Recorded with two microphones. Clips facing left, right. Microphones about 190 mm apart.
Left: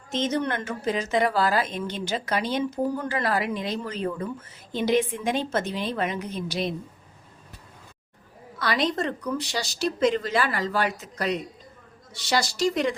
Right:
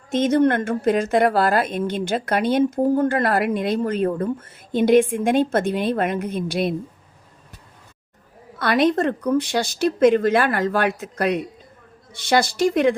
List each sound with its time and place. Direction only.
0.1 s a woman's voice: 55° right (ahead or behind)
8.5 s speech: 55° right (ahead or behind)